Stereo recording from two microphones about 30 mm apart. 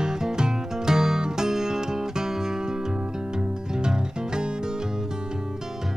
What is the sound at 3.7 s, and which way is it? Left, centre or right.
Music, right.